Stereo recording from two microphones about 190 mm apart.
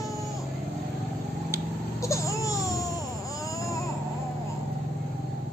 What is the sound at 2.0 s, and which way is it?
Baby cry, 15° left (ahead or behind).